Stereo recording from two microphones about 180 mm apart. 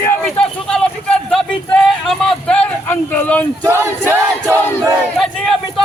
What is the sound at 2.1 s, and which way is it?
Speech, 5° left (ahead or behind).